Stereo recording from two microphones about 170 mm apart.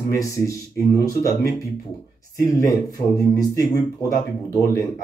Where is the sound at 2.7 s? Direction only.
20° left (ahead or behind).